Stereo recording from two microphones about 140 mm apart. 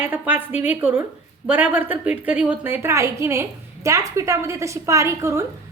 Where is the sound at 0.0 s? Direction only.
15° right (ahead or behind).